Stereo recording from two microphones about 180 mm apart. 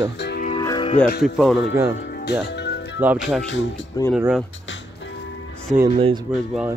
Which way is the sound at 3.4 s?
90° left.